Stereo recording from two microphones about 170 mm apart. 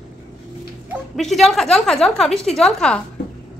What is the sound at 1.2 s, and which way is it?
A woman's voice, centre (ahead or behind).